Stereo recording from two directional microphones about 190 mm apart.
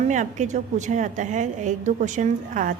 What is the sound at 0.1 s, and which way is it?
A woman's voice, 40° right (ahead or behind).